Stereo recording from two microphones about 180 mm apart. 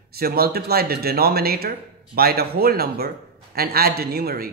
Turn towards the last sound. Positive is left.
turn(degrees=-60)  # may be behind; listen again after turning